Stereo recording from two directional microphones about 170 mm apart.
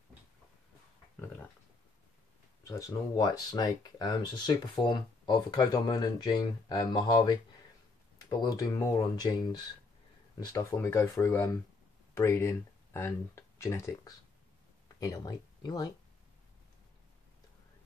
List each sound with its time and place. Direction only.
2.6 s speech: 20° left (ahead or behind)
8.4 s speech: 20° left (ahead or behind)